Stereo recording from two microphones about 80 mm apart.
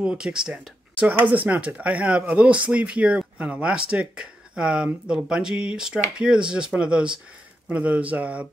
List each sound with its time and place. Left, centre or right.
0.0 s speech: centre